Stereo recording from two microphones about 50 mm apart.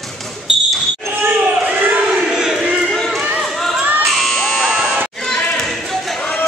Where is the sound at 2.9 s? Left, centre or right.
Centre.